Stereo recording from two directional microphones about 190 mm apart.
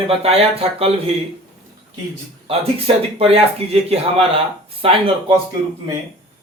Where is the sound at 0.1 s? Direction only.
30° right (ahead or behind).